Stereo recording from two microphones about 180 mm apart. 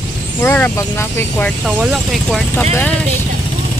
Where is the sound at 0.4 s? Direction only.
10° left (ahead or behind).